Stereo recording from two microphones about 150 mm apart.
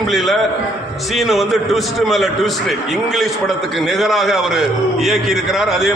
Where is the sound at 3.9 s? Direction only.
Centre (ahead or behind).